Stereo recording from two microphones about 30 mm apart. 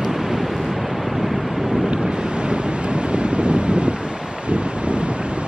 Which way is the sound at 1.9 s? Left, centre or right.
Right.